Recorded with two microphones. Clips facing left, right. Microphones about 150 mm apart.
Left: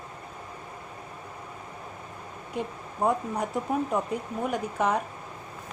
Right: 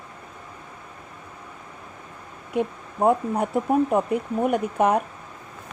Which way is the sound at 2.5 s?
55° right (ahead or behind).